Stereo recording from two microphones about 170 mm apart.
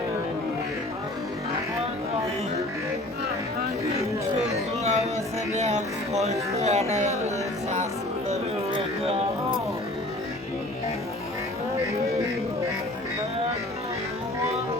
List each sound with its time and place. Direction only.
4.8 s music: 40° right (ahead or behind)
6.6 s speech: 40° right (ahead or behind)